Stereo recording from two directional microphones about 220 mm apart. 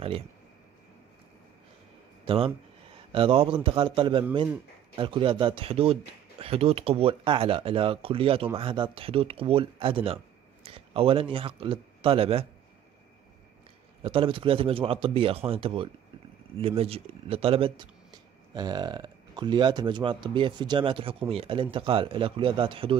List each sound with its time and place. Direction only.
2.2 s speech: 25° right (ahead or behind)
14.0 s speech: 25° right (ahead or behind)